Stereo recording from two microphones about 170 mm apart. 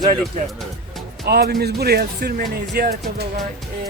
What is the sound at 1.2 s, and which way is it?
Speech, 70° right (ahead or behind).